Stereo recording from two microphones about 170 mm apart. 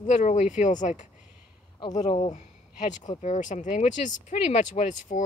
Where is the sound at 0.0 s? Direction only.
45° left (ahead or behind).